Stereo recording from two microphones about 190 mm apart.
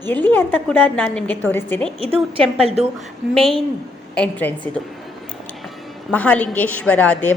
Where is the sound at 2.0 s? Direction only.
30° right (ahead or behind).